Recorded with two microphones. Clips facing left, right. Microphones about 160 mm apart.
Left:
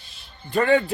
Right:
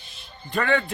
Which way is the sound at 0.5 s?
35° left (ahead or behind).